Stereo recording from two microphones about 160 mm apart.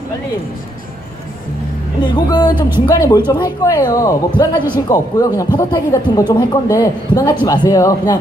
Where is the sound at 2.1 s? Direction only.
25° left (ahead or behind).